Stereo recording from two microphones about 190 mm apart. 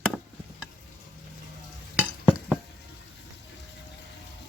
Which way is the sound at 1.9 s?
5° right (ahead or behind).